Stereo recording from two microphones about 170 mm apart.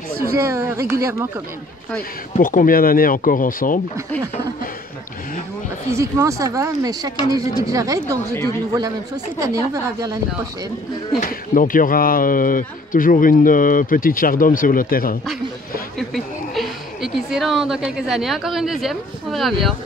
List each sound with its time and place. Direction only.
0.3 s speech: 15° right (ahead or behind)
2.3 s speech: 50° left (ahead or behind)
5.9 s speech: 15° right (ahead or behind)
11.1 s speech: 55° left (ahead or behind)
16.0 s a woman's voice: centre (ahead or behind)